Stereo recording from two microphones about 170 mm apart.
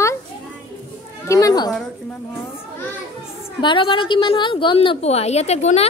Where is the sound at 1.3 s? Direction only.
20° left (ahead or behind).